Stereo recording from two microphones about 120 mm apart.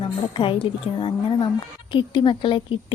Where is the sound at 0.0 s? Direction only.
45° left (ahead or behind).